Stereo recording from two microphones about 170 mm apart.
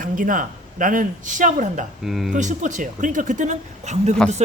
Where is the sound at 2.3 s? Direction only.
45° right (ahead or behind).